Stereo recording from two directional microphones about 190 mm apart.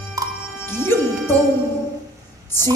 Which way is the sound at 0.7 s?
10° left (ahead or behind).